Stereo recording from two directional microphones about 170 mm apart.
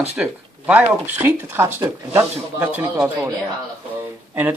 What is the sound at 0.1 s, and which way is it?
Speech, 5° right (ahead or behind).